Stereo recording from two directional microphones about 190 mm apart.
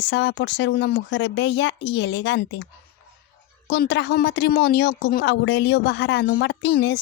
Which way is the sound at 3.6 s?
65° left (ahead or behind).